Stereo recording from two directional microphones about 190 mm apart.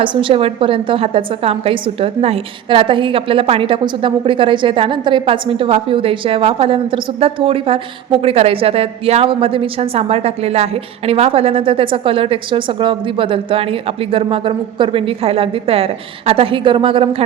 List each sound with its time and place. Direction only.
0.0 s a woman's voice: 25° right (ahead or behind)